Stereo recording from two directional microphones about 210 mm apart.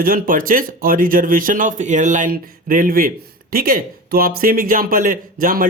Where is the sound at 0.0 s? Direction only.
40° right (ahead or behind).